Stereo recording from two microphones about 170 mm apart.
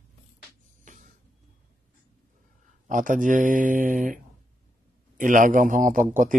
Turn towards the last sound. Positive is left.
turn(degrees=-50)  # may be behind; listen again after turning